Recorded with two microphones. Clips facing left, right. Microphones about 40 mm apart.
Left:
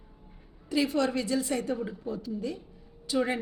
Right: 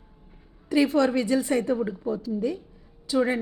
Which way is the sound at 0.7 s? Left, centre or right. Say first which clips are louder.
Right 6 dB; centre.